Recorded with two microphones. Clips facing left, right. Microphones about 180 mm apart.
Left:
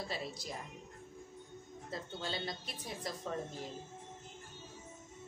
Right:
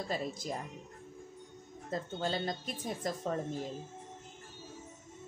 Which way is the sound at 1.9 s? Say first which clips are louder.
Right 7 dB; 45° right (ahead or behind).